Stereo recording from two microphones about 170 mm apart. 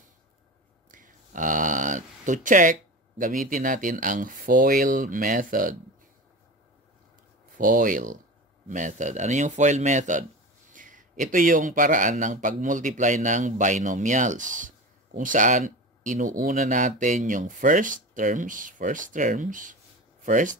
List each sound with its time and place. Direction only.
0.9 s speech: 50° right (ahead or behind)
7.5 s speech: 50° right (ahead or behind)